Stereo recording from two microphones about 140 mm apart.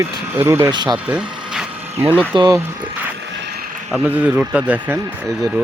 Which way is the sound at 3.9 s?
5° right (ahead or behind).